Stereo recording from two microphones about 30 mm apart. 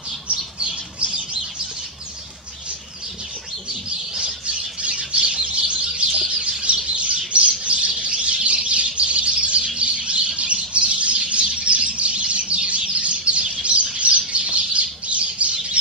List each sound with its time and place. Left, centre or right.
0.6 s bird: right
4.2 s squawk: right
5.1 s bird: right
5.4 s bird: right